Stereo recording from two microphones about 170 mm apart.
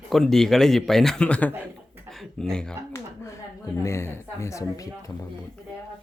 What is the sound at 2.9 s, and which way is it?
A woman's voice, 15° left (ahead or behind).